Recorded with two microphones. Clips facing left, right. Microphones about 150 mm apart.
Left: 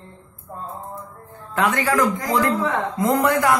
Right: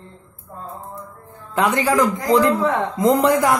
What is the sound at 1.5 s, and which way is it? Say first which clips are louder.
A woman's voice: right 2 dB; 15° right (ahead or behind).